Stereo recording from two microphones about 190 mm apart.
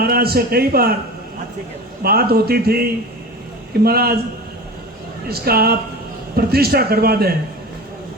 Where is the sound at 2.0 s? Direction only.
55° right (ahead or behind).